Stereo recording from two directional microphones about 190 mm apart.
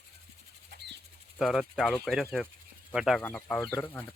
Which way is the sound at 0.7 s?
65° right (ahead or behind).